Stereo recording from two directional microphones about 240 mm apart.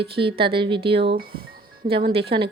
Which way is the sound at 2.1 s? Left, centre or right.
Right.